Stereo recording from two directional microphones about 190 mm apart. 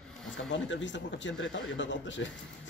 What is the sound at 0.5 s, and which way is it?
Speech, 75° left (ahead or behind).